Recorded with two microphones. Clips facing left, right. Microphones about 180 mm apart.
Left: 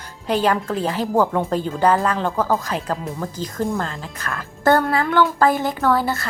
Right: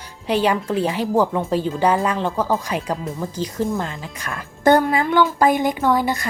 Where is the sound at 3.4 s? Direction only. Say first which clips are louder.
Right 1 dB; 5° right (ahead or behind).